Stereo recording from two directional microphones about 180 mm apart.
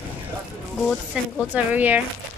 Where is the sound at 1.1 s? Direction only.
5° right (ahead or behind).